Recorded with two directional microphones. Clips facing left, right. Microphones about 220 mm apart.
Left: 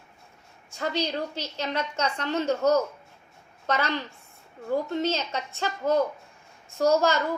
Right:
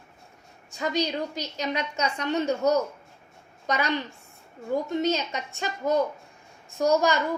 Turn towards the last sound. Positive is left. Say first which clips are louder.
# even
turn(degrees=-15)  # may be behind; listen again after turning